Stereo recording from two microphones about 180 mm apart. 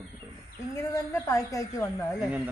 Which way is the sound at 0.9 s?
15° left (ahead or behind).